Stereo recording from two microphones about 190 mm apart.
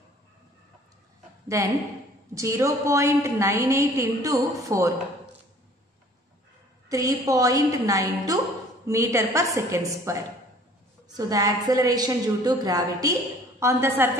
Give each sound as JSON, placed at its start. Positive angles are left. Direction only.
{"t": 1.5, "sound": "a woman's voice", "side_deg": -15}
{"t": 6.9, "sound": "a woman's voice", "side_deg": -20}